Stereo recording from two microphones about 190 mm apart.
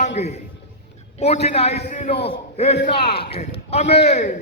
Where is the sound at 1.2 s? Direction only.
35° left (ahead or behind).